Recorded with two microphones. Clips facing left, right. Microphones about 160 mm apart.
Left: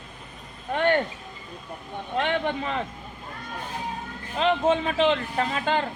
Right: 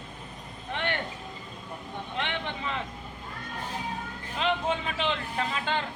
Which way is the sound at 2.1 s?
45° left (ahead or behind).